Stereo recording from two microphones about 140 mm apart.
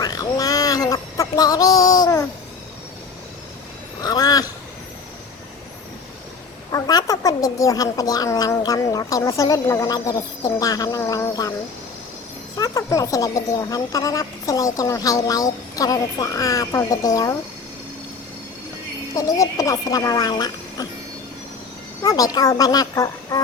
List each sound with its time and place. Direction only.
0.0 s a sound: 25° left (ahead or behind)
4.0 s a sound: 25° left (ahead or behind)
6.7 s a woman's voice: 25° left (ahead or behind)
12.5 s a woman's voice: 25° left (ahead or behind)
19.1 s a woman's voice: 25° left (ahead or behind)
22.0 s a woman's voice: 25° left (ahead or behind)